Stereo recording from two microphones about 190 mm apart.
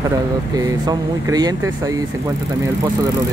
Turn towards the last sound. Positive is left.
turn(degrees=-20)  # may be behind; listen again after turning